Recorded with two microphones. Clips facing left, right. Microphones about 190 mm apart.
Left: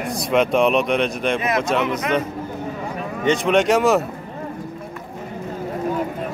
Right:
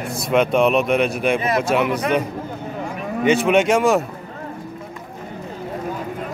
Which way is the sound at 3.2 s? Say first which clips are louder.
Right 1 dB; 5° right (ahead or behind).